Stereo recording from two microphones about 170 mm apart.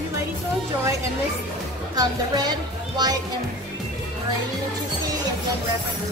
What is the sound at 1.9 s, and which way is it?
Speech, 25° right (ahead or behind).